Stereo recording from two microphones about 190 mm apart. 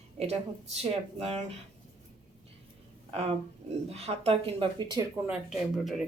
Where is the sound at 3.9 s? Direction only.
35° right (ahead or behind).